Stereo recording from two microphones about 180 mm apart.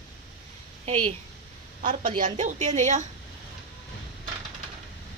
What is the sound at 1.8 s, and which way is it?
A woman's voice, 45° right (ahead or behind).